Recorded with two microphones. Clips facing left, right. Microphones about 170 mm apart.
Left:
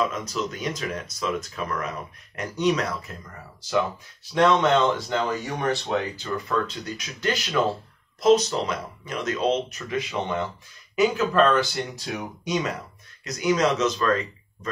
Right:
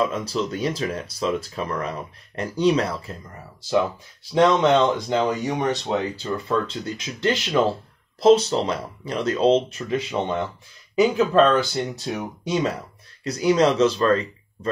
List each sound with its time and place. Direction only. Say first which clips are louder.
0.0 s speech: right 3 dB; 30° right (ahead or behind)
4.5 s speech: right 1 dB; 15° right (ahead or behind)